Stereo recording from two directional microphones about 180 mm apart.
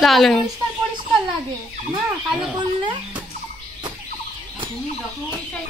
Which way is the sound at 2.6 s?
25° right (ahead or behind).